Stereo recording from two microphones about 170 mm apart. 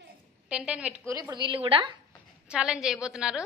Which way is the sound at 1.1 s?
25° right (ahead or behind).